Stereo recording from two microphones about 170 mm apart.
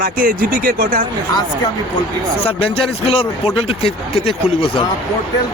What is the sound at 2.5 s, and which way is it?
Speech, 35° left (ahead or behind).